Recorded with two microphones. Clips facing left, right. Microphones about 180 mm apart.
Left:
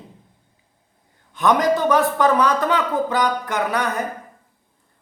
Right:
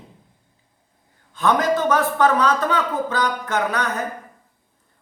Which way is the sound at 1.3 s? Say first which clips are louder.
Left 2 dB; 15° left (ahead or behind).